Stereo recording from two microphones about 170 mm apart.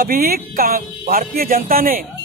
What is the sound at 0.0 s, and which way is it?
A man's voice, 60° right (ahead or behind).